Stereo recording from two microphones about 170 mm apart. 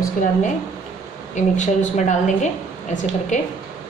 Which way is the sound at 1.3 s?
45° left (ahead or behind).